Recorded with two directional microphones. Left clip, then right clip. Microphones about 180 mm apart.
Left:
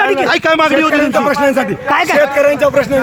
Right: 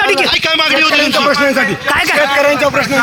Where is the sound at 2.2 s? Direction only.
45° left (ahead or behind).